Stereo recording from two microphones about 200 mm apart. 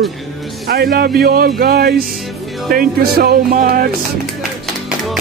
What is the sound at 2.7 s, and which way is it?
Speech, 45° right (ahead or behind).